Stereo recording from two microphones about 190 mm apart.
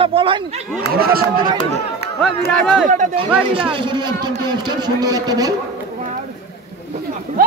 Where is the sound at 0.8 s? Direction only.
55° right (ahead or behind).